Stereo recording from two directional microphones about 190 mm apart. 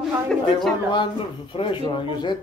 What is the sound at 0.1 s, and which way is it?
Speech, centre (ahead or behind).